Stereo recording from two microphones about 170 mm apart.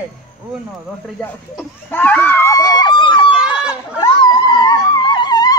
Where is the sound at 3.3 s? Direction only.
5° right (ahead or behind).